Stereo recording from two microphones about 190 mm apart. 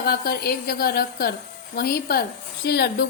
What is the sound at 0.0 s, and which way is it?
A woman's voice, 55° left (ahead or behind).